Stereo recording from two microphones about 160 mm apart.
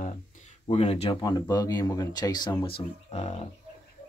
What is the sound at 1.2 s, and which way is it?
Speech, 25° left (ahead or behind).